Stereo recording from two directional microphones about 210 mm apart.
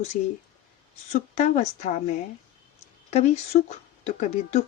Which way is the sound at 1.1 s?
35° left (ahead or behind).